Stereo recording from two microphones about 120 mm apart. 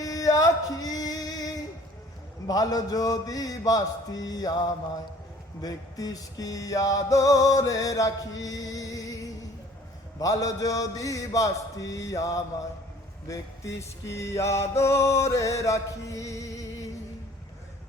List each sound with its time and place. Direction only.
0.0 s music: 30° left (ahead or behind)
2.5 s mantra: 30° left (ahead or behind)
5.6 s music: 30° left (ahead or behind)